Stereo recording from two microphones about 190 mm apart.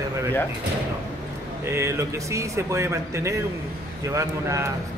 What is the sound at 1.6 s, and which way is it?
Speech, 15° right (ahead or behind).